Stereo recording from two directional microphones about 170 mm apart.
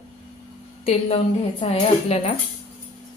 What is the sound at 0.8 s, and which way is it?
A woman's voice, 35° left (ahead or behind).